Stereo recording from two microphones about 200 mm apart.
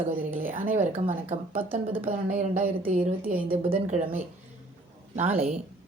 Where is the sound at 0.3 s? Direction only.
45° right (ahead or behind).